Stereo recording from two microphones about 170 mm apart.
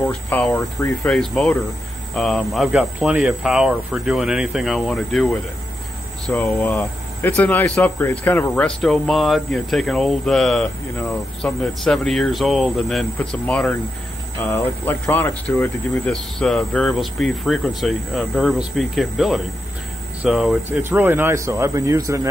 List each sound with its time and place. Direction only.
0.0 s speech: 10° left (ahead or behind)
21.0 s a man's voice: 15° right (ahead or behind)